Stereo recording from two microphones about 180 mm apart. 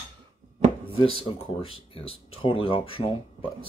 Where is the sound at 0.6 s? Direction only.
40° right (ahead or behind).